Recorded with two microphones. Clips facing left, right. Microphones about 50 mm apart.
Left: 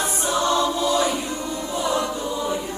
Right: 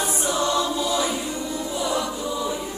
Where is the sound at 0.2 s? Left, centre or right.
Left.